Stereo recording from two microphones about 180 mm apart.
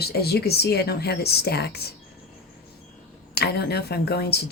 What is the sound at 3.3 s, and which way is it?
Speech, 60° left (ahead or behind).